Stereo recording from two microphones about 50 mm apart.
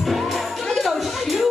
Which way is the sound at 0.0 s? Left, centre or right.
Centre.